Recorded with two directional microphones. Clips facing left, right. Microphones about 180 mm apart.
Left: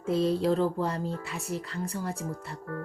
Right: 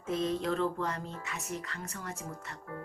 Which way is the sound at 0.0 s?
30° left (ahead or behind).